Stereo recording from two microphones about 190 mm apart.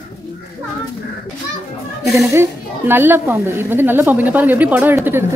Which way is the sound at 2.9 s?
10° right (ahead or behind).